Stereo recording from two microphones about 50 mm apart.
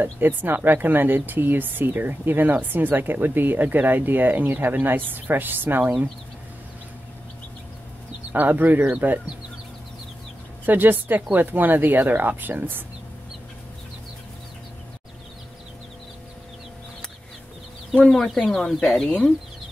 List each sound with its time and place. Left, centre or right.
0.2 s speech: right
8.3 s speech: right
10.6 s speech: right
17.9 s speech: centre